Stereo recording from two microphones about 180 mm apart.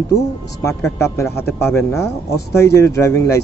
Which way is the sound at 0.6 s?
15° left (ahead or behind).